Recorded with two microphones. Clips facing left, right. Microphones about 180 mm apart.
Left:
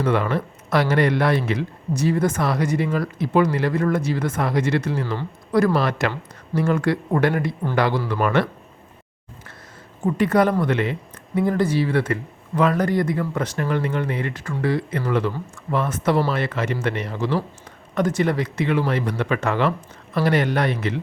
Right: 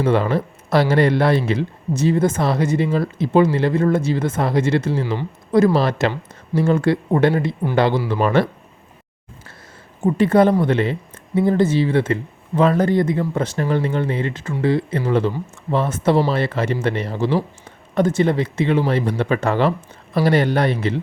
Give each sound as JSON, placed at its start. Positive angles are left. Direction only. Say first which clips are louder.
{"t": 0.0, "sound": "speech", "louder": "right 3 dB", "side_deg": -30}
{"t": 10.0, "sound": "speech", "louder": "right 4 dB", "side_deg": -25}